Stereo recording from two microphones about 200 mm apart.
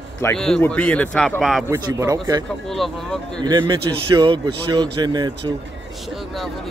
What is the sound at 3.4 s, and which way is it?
A man's voice, 20° right (ahead or behind).